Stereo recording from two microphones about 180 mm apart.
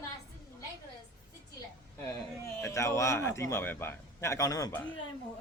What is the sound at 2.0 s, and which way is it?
Speech, 15° left (ahead or behind).